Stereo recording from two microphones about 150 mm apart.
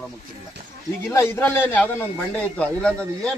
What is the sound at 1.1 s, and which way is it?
A man's voice, 15° left (ahead or behind).